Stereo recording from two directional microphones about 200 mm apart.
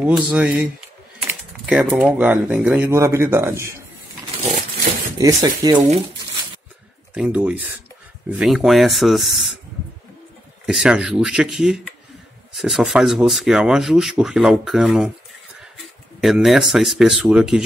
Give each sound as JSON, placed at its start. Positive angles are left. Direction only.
{"t": 0.0, "sound": "speech", "side_deg": -5}
{"t": 5.2, "sound": "speech", "side_deg": -20}
{"t": 7.2, "sound": "speech", "side_deg": -5}
{"t": 10.7, "sound": "speech", "side_deg": -5}
{"t": 16.2, "sound": "speech", "side_deg": 0}